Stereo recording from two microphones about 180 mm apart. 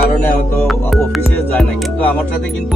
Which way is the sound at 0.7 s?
Centre (ahead or behind).